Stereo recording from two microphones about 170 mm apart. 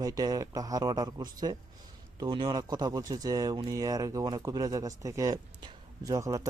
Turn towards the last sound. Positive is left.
turn(degrees=-20)  # may be behind; listen again after turning